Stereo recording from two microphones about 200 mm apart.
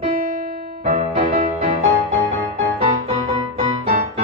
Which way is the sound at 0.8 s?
30° right (ahead or behind).